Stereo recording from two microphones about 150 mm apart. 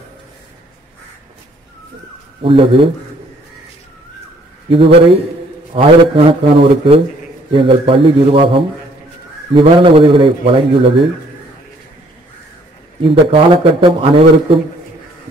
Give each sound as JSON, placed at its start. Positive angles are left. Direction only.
{"t": 2.4, "sound": "speech", "side_deg": -35}
{"t": 4.6, "sound": "speech", "side_deg": -35}
{"t": 13.0, "sound": "speech", "side_deg": -35}